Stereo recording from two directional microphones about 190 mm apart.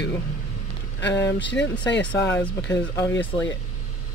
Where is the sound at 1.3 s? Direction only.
70° left (ahead or behind).